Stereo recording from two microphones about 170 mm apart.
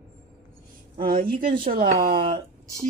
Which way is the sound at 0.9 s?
60° right (ahead or behind).